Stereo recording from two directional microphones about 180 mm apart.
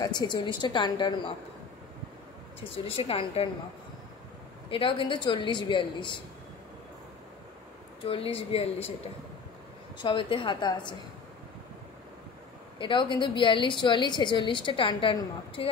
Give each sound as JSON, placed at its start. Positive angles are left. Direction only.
{"t": 0.0, "sound": "a woman's voice", "side_deg": 20}
{"t": 2.7, "sound": "speech", "side_deg": 30}
{"t": 4.6, "sound": "a woman's voice", "side_deg": 30}
{"t": 8.1, "sound": "speech", "side_deg": 30}
{"t": 9.9, "sound": "a woman's voice", "side_deg": 30}
{"t": 12.7, "sound": "a woman's voice", "side_deg": 25}